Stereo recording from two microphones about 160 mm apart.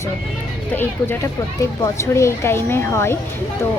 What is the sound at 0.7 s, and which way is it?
Speech, 10° left (ahead or behind).